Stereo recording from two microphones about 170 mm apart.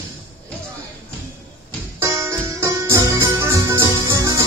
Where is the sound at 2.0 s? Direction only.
15° right (ahead or behind).